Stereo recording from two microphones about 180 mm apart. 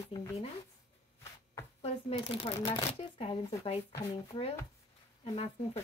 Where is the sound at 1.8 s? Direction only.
35° left (ahead or behind).